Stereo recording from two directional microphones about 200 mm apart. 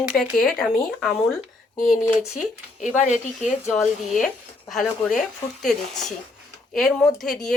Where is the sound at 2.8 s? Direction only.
35° left (ahead or behind).